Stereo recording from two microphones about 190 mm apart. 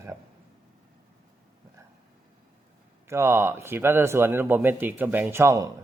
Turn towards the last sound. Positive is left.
turn(degrees=-15)  # may be behind; listen again after turning